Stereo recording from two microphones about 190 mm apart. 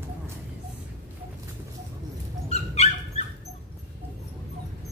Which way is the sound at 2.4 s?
35° left (ahead or behind).